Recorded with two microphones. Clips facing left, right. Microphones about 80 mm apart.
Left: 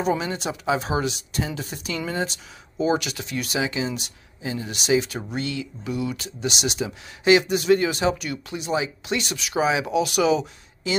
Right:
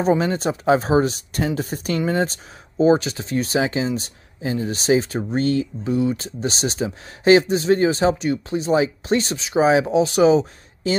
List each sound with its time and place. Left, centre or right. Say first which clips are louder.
0.0 s speech: right 5 dB; right